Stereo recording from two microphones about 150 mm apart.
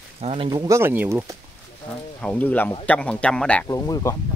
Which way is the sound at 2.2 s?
10° left (ahead or behind).